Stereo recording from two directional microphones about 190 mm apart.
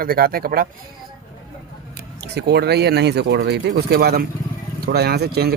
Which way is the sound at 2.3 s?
60° right (ahead or behind).